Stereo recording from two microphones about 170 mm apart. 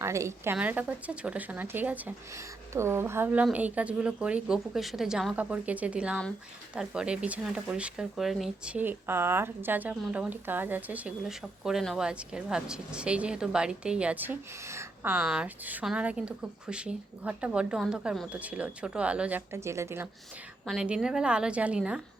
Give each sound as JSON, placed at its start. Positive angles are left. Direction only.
{"t": 0.0, "sound": "speech", "side_deg": -15}
{"t": 20.7, "sound": "a woman's voice", "side_deg": -5}